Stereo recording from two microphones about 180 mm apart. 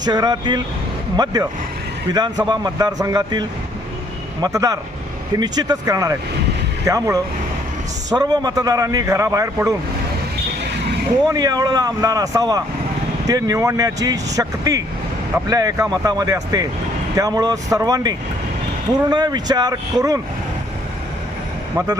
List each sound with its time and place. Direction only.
0.0 s a man's voice: 20° right (ahead or behind)
11.3 s a man's voice: 20° right (ahead or behind)